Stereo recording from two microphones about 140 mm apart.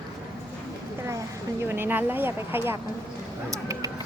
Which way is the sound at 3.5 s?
25° right (ahead or behind).